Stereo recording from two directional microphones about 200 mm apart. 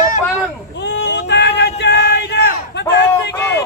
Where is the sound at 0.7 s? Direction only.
60° left (ahead or behind).